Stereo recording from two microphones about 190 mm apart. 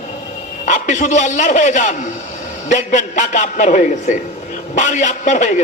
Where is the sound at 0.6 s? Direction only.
40° left (ahead or behind).